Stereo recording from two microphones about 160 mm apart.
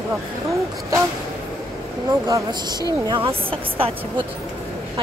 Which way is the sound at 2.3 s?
25° right (ahead or behind).